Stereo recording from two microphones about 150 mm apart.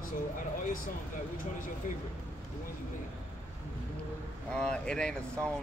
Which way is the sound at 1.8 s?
60° left (ahead or behind).